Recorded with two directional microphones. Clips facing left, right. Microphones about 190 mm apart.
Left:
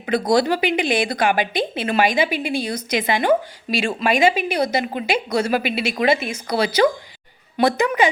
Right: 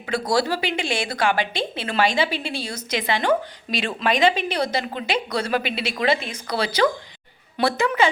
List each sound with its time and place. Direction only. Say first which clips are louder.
0.0 s a woman's voice: left 4 dB; 20° left (ahead or behind)